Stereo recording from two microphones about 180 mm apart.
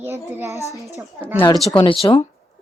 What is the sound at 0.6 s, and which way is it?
Speech, 15° left (ahead or behind).